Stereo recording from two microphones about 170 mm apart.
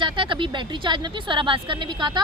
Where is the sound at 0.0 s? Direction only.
30° right (ahead or behind).